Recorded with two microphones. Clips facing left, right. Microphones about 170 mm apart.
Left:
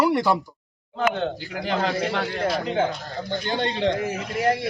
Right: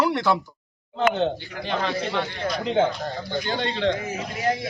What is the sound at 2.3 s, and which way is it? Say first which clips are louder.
Speech: left 4 dB; 30° left (ahead or behind).